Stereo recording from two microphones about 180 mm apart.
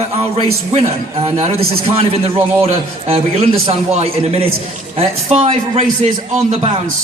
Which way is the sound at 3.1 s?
35° right (ahead or behind).